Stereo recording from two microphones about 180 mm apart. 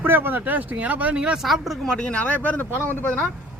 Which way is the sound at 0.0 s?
10° right (ahead or behind).